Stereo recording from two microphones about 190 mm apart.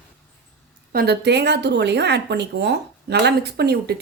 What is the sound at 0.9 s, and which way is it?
Speech, 60° right (ahead or behind).